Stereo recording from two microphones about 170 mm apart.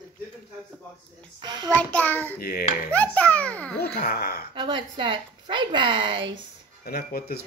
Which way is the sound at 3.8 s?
70° left (ahead or behind).